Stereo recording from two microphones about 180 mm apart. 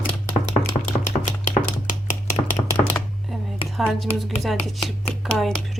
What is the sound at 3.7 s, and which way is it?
Speech, centre (ahead or behind).